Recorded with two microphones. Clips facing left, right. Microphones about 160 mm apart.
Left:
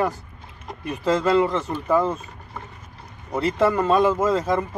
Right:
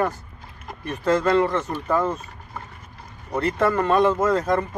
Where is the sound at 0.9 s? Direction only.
10° left (ahead or behind).